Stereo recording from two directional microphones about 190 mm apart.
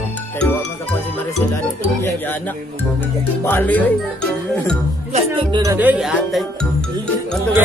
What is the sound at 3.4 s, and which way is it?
Speech, 10° left (ahead or behind).